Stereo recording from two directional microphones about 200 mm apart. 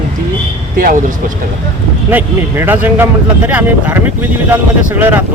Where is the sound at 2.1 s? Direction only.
10° right (ahead or behind).